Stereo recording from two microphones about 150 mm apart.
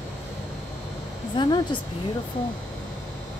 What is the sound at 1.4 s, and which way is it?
Speech, 30° left (ahead or behind).